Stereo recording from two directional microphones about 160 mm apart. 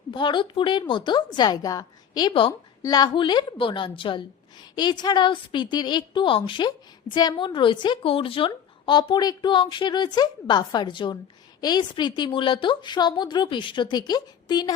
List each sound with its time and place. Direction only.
0.1 s a woman's voice: 30° left (ahead or behind)